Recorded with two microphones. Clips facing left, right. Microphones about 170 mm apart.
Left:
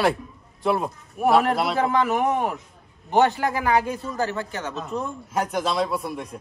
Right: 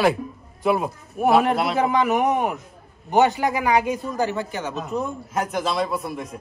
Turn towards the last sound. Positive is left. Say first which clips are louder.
# right 1 dB
turn(degrees=0)  # may be behind; listen again after turning